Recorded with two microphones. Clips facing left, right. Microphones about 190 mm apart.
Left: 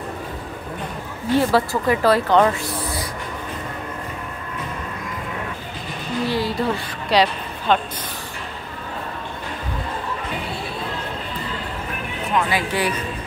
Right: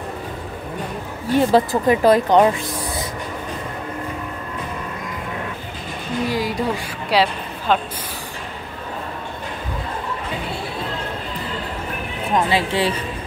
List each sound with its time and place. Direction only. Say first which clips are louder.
1.3 s speech: right 2 dB; 20° right (ahead or behind)
6.3 s speech: left 1 dB; 15° right (ahead or behind)
12.4 s speech: right 2 dB; 25° right (ahead or behind)